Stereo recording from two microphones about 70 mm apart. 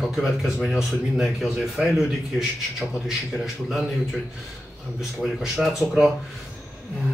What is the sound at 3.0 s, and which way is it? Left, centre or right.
Speech, centre.